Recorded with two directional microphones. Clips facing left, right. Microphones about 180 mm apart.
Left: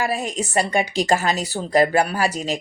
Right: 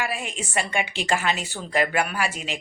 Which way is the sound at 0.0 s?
40° left (ahead or behind).